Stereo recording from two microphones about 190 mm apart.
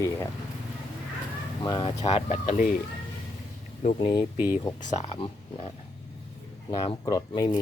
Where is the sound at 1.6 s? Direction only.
20° left (ahead or behind); by 2.7 s 40° left (ahead or behind).